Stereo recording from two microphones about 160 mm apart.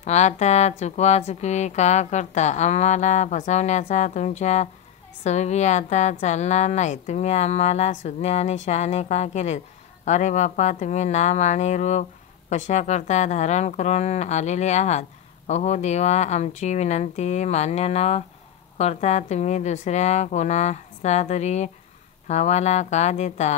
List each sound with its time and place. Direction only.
0.0 s speech: 45° left (ahead or behind)